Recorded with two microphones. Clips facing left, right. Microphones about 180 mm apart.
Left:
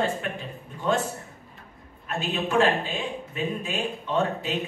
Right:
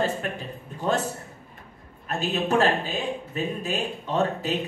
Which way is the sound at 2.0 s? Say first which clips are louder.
Right 2 dB; 40° right (ahead or behind).